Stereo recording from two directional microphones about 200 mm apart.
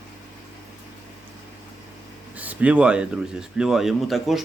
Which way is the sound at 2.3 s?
5° right (ahead or behind).